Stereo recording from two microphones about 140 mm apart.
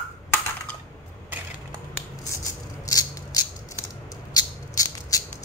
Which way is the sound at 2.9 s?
25° left (ahead or behind).